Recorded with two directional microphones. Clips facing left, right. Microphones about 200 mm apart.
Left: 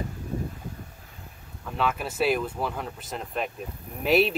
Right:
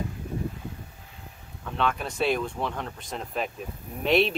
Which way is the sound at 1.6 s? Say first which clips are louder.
Even; 5° left (ahead or behind).